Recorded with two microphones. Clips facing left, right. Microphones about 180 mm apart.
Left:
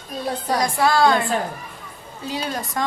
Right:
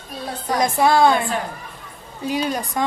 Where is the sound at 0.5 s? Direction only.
20° right (ahead or behind).